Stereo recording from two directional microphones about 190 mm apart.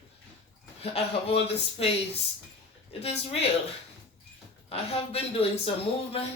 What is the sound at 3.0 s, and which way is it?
Speech, 30° left (ahead or behind).